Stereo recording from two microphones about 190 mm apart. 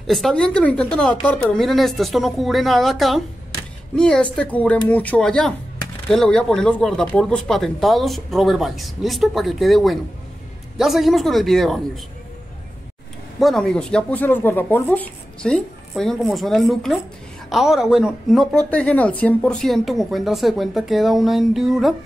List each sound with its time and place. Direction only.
0.0 s a woman's voice: centre (ahead or behind)
13.4 s a woman's voice: centre (ahead or behind)